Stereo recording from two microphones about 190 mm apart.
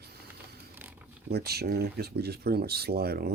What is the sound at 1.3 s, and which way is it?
Speech, 55° right (ahead or behind).